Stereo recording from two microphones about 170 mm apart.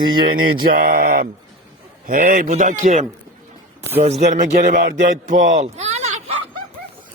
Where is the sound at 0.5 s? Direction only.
60° right (ahead or behind); by 6.3 s 40° right (ahead or behind).